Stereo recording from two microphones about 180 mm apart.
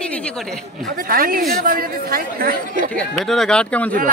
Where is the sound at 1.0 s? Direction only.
55° right (ahead or behind).